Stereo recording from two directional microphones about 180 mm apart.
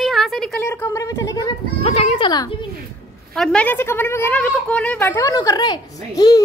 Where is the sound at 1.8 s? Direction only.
35° left (ahead or behind).